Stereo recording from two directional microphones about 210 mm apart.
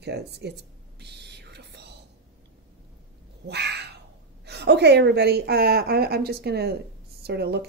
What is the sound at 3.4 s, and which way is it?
Cat, 50° right (ahead or behind).